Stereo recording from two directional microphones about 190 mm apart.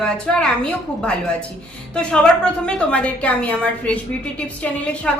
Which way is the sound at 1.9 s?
5° left (ahead or behind).